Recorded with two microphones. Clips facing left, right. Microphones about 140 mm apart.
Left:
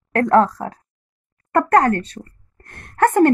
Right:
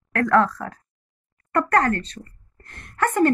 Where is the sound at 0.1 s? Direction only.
30° left (ahead or behind).